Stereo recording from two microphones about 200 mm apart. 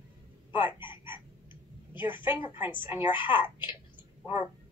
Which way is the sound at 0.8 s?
25° left (ahead or behind).